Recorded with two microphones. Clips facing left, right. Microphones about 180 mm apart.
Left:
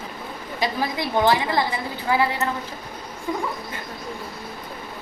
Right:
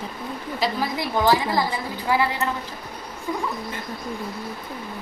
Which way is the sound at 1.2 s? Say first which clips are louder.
Even; 20° left (ahead or behind).